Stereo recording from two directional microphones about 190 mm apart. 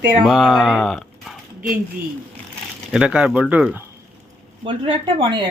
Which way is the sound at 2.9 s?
5° right (ahead or behind).